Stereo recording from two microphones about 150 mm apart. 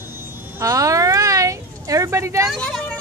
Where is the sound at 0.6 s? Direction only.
20° right (ahead or behind).